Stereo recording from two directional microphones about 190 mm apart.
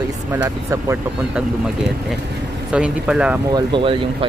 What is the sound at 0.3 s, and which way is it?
Speech, 15° right (ahead or behind).